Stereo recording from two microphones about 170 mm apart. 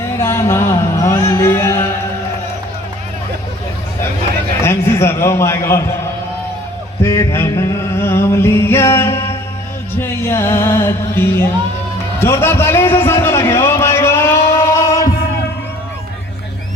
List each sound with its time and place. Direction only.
0.2 s music: 15° left (ahead or behind)
4.6 s a man's voice: 15° left (ahead or behind)
7.0 s music: 15° left (ahead or behind)
12.2 s a sound: 15° left (ahead or behind)